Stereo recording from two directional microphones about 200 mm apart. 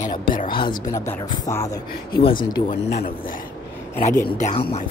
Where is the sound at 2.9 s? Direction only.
50° left (ahead or behind).